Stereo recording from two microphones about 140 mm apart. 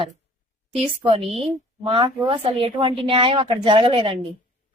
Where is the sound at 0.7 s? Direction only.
40° right (ahead or behind).